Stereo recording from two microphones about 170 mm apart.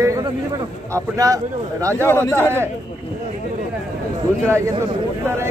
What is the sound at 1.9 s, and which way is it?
Speech, 10° left (ahead or behind).